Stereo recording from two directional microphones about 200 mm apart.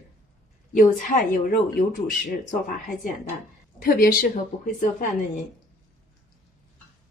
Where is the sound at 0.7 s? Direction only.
40° left (ahead or behind).